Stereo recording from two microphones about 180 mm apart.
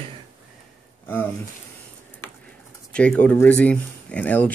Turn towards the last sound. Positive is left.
turn(degrees=10)  # may be behind; listen again after turning